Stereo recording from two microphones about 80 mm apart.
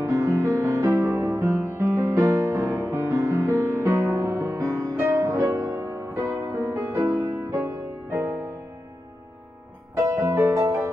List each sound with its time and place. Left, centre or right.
0.1 s music: right
10.2 s music: right